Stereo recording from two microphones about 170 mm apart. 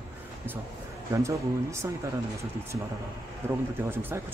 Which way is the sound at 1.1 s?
15° right (ahead or behind).